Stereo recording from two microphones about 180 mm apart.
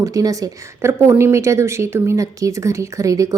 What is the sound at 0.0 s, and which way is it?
A woman's voice, 20° right (ahead or behind).